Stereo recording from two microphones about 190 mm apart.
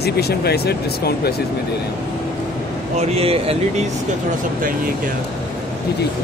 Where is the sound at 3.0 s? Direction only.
30° right (ahead or behind).